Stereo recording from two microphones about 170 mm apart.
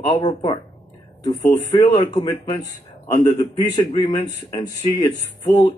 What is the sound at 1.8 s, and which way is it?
Speech, 45° left (ahead or behind).